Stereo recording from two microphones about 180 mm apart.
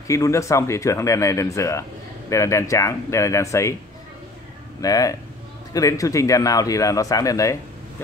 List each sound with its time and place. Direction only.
0.1 s speech: 15° left (ahead or behind)
4.8 s a man's voice: 20° left (ahead or behind)